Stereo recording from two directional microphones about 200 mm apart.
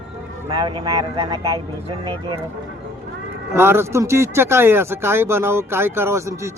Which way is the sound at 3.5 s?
10° right (ahead or behind).